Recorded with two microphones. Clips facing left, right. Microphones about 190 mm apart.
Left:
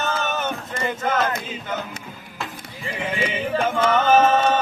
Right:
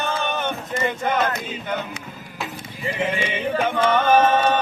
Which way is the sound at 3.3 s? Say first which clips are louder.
Even; 5° left (ahead or behind).